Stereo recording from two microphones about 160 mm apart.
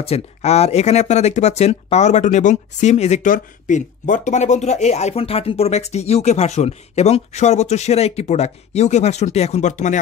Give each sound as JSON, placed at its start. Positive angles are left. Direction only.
{"t": 0.0, "sound": "speech", "side_deg": 40}